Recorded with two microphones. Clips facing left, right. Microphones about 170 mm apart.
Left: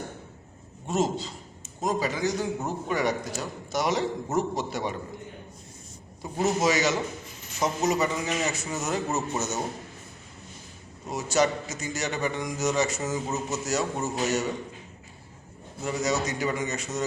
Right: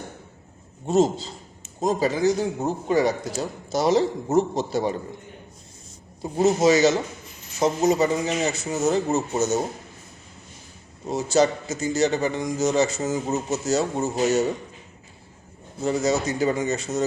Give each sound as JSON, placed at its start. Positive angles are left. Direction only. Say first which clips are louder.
{"t": 1.8, "sound": "a man's voice", "louder": "right 6 dB", "side_deg": -30}
{"t": 6.2, "sound": "a man's voice", "louder": "right 6 dB", "side_deg": -25}
{"t": 11.0, "sound": "a man's voice", "louder": "right 5 dB", "side_deg": -25}
{"t": 15.8, "sound": "a man's voice", "louder": "right 5 dB", "side_deg": -30}